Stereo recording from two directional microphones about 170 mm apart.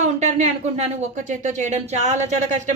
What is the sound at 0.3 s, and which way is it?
Speech, 40° right (ahead or behind).